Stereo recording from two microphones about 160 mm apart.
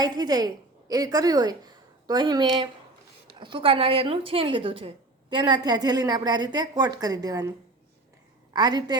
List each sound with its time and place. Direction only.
0.0 s a woman's voice: 25° right (ahead or behind)
8.5 s a woman's voice: 25° right (ahead or behind)